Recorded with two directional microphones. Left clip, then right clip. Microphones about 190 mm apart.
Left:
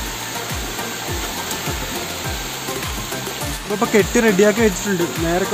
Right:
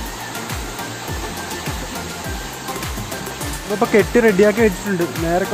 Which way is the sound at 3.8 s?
30° right (ahead or behind).